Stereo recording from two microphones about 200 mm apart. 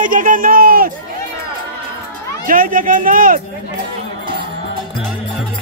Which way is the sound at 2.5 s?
45° right (ahead or behind).